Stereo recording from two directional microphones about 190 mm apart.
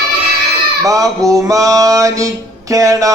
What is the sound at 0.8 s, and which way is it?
Speech, 20° right (ahead or behind).